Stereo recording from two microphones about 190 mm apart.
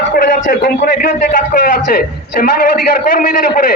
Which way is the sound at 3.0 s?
50° left (ahead or behind).